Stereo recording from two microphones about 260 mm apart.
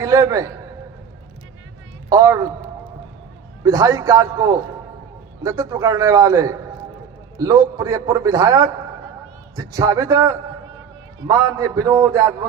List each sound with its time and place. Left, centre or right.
0.0 s a man's voice: centre
2.0 s a man's voice: centre
3.6 s a man's voice: centre